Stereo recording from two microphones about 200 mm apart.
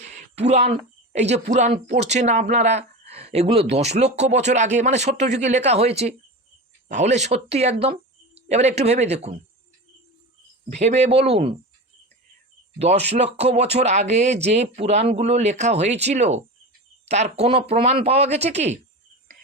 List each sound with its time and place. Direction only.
0.3 s speech: 35° right (ahead or behind)
10.7 s speech: 35° right (ahead or behind)
12.8 s speech: 30° right (ahead or behind)